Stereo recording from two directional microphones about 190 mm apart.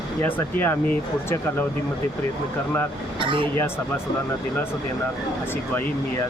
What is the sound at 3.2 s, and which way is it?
Speech, 25° right (ahead or behind).